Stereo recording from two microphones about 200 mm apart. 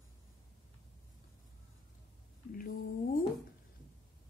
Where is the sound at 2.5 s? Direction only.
45° left (ahead or behind).